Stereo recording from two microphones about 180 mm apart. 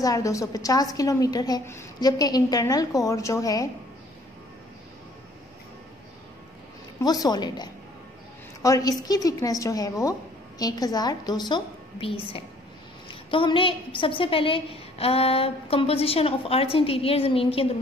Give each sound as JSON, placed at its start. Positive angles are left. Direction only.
{"t": 0.0, "sound": "a woman's voice", "side_deg": 20}
{"t": 7.0, "sound": "a woman's voice", "side_deg": 20}